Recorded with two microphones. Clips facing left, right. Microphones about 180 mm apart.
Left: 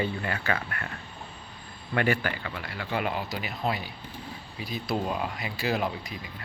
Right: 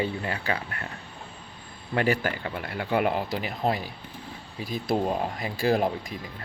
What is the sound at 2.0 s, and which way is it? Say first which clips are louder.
Speech: right 2 dB; 40° right (ahead or behind).